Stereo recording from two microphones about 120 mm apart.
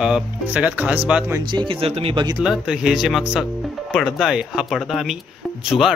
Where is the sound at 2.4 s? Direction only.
5° right (ahead or behind).